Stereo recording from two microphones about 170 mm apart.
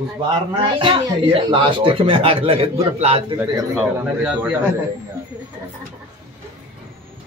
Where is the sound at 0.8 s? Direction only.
30° right (ahead or behind).